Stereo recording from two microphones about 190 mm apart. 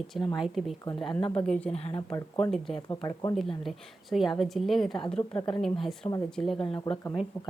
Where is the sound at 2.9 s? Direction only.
20° left (ahead or behind).